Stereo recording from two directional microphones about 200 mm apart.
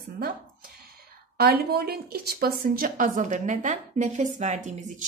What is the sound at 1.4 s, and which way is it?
A woman's voice, 50° right (ahead or behind).